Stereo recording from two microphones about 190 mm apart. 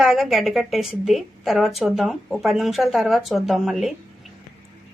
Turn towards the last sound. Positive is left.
turn(degrees=0)  # may be behind; listen again after turning